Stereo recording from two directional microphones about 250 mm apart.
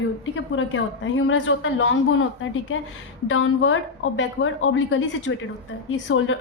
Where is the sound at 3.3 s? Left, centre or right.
Left.